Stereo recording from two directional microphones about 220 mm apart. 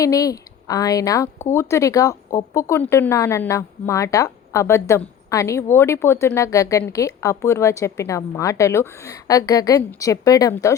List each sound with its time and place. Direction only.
0.0 s speech: 15° left (ahead or behind)